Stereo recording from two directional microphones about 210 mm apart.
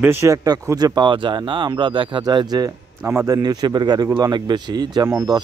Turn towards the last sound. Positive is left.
turn(degrees=-20)  # may be behind; listen again after turning